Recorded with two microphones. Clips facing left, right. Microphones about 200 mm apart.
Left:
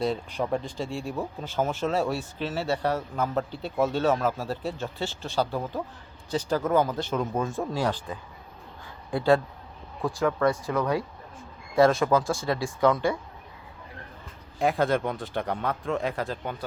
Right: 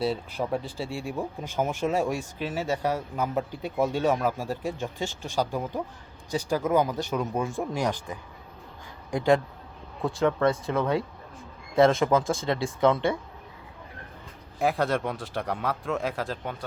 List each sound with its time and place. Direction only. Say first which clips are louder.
0.0 s speech: even; 5° right (ahead or behind); by 13.1 s 25° right (ahead or behind)
14.6 s speech: left 1 dB; centre (ahead or behind)